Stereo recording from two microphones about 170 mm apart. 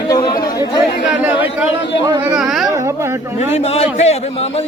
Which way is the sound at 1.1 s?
10° right (ahead or behind).